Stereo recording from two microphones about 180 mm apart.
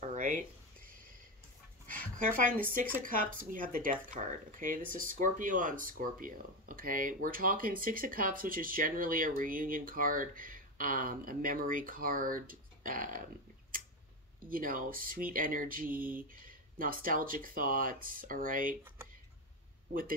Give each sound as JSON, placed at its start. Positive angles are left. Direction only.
{"t": 0.1, "sound": "a sound", "side_deg": -50}
{"t": 2.1, "sound": "speech", "side_deg": -50}
{"t": 14.4, "sound": "speech", "side_deg": -50}
{"t": 19.9, "sound": "speech", "side_deg": -50}